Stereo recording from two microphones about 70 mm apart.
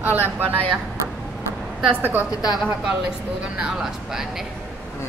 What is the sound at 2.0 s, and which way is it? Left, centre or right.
Speech, right.